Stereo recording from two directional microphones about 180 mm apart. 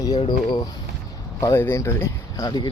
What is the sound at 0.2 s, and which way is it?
Speech, 25° left (ahead or behind).